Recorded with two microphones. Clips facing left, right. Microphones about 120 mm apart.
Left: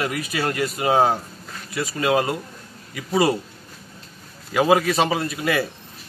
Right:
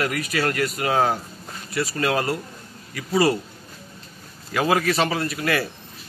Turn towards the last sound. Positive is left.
turn(degrees=20)  # may be behind; listen again after turning